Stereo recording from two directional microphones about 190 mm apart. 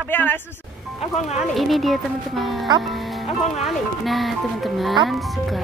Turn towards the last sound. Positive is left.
turn(degrees=0)  # may be behind; listen again after turning